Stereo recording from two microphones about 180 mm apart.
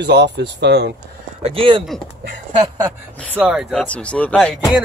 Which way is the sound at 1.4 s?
30° right (ahead or behind).